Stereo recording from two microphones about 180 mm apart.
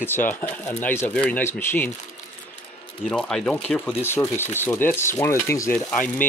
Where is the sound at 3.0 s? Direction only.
5° left (ahead or behind).